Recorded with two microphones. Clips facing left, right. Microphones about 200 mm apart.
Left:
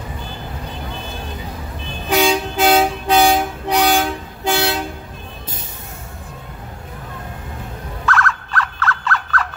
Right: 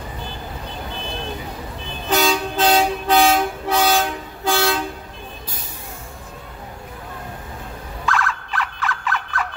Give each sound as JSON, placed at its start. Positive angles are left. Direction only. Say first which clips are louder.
{"t": 2.0, "sound": "vehicle", "louder": "left 3 dB", "side_deg": 10}
{"t": 4.5, "sound": "toot", "louder": "left 1 dB", "side_deg": 20}
{"t": 8.0, "sound": "a sound", "louder": "left 2 dB", "side_deg": -15}